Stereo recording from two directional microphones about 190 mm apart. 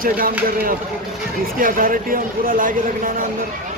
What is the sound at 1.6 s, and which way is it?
Speech, 45° right (ahead or behind).